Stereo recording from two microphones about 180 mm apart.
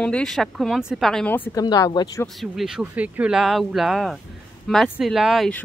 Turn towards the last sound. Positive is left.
turn(degrees=0)  # may be behind; listen again after turning